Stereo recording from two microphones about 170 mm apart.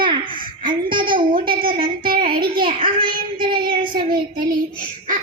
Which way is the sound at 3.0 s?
30° right (ahead or behind).